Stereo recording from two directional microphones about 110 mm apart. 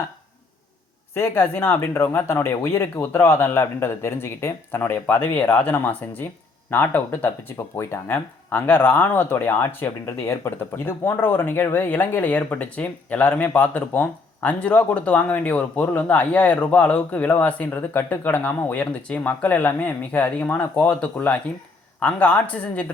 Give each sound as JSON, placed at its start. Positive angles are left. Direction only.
{"t": 1.1, "sound": "speech", "side_deg": 20}